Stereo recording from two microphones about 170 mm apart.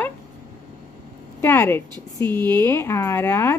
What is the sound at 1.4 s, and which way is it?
A woman's voice, 15° left (ahead or behind).